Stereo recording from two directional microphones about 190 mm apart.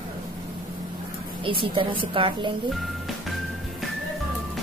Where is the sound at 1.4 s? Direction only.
25° right (ahead or behind).